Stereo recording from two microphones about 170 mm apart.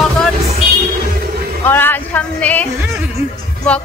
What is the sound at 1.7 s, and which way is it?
Music, 10° left (ahead or behind).